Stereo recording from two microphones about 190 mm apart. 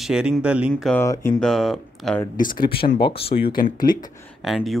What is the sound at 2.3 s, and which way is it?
Speech, 45° left (ahead or behind).